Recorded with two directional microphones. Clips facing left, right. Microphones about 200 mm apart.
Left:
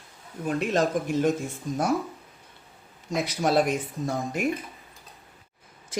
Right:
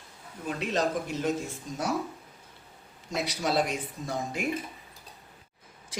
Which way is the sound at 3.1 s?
50° left (ahead or behind).